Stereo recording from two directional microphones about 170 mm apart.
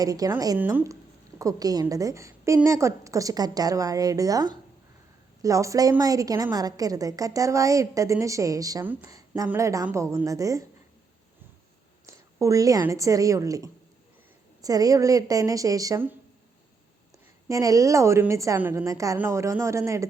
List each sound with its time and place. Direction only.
0.0 s a woman's voice: 20° right (ahead or behind)
12.0 s a woman's voice: 20° right (ahead or behind)
17.5 s a woman's voice: 20° right (ahead or behind)